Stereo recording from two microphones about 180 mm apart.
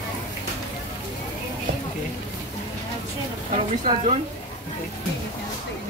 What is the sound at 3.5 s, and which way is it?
Speech, 35° right (ahead or behind).